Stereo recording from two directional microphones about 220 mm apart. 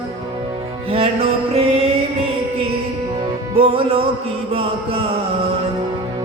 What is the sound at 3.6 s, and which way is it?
Music, 25° right (ahead or behind).